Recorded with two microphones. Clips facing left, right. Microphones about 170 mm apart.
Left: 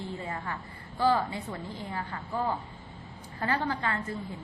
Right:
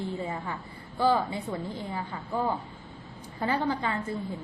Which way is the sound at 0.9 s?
15° right (ahead or behind).